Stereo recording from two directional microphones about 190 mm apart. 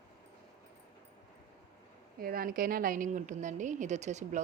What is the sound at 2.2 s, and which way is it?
A woman's voice, 50° right (ahead or behind).